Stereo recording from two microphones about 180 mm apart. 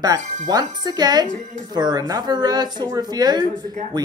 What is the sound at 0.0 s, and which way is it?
Speech, 20° right (ahead or behind).